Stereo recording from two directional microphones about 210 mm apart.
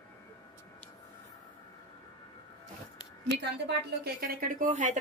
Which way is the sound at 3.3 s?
50° right (ahead or behind).